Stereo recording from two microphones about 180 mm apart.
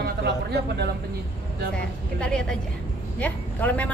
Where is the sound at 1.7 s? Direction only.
5° left (ahead or behind).